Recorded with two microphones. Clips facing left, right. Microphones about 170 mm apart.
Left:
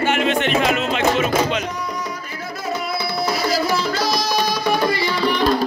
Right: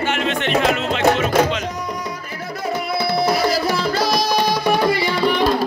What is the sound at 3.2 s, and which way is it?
Tabla, 60° right (ahead or behind).